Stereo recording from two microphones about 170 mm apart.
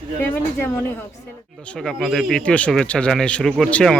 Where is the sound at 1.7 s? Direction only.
Centre (ahead or behind).